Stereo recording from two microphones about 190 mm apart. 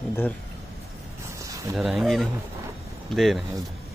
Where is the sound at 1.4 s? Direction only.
15° right (ahead or behind).